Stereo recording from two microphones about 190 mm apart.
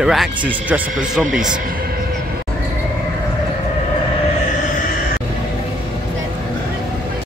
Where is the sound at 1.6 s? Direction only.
50° right (ahead or behind).